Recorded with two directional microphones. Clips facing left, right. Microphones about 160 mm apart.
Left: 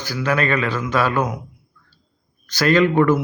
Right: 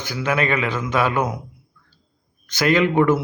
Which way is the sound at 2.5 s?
20° right (ahead or behind).